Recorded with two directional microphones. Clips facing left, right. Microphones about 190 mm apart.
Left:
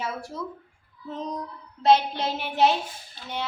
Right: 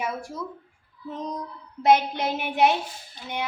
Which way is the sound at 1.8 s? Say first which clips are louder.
Even; 15° right (ahead or behind).